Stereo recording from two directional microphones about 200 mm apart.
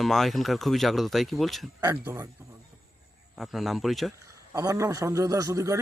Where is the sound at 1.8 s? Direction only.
15° right (ahead or behind).